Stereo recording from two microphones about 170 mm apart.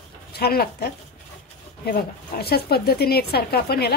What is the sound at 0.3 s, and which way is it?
A woman's voice, 65° left (ahead or behind).